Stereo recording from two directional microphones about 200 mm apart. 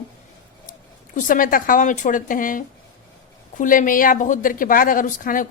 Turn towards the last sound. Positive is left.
turn(degrees=40)  # may be behind; listen again after turning